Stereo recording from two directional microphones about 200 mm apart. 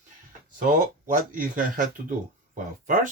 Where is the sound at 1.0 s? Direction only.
40° right (ahead or behind).